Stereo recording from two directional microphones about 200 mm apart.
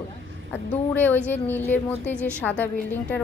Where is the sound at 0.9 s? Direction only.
10° left (ahead or behind).